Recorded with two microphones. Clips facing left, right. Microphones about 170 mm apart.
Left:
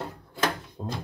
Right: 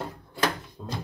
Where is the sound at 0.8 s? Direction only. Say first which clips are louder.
Left 5 dB; 40° left (ahead or behind).